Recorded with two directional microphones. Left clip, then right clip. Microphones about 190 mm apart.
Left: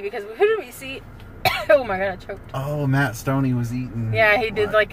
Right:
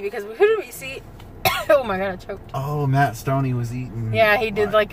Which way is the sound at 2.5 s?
50° left (ahead or behind).